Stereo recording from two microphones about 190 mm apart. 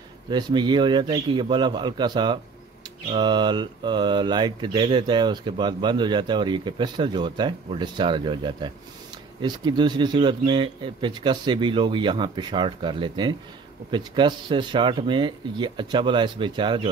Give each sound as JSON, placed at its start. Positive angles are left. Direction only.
{"t": 0.3, "sound": "speech", "side_deg": -25}